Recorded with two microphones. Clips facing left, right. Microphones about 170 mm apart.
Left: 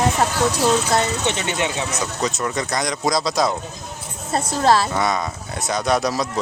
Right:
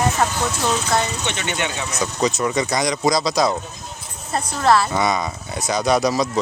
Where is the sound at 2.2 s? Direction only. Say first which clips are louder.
Right 5 dB; centre (ahead or behind).